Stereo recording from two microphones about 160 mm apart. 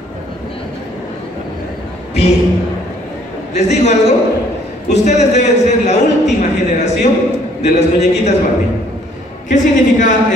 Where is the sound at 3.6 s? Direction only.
45° left (ahead or behind).